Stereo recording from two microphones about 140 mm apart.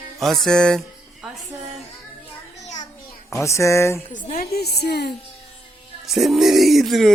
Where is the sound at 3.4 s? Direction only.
20° left (ahead or behind).